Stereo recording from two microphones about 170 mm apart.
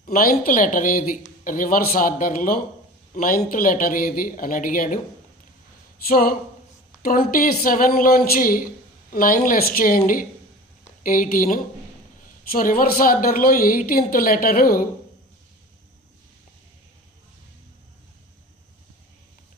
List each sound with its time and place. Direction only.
0.0 s a woman's voice: 55° left (ahead or behind)
6.1 s a woman's voice: 60° left (ahead or behind)